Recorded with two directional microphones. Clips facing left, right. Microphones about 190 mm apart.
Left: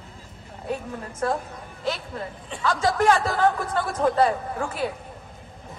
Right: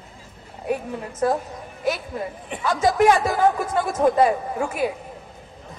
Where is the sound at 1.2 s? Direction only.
20° right (ahead or behind).